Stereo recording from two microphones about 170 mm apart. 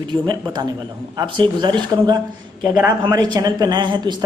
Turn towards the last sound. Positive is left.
turn(degrees=-25)  # may be behind; listen again after turning